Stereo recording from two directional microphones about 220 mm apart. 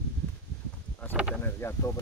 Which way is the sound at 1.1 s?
5° right (ahead or behind).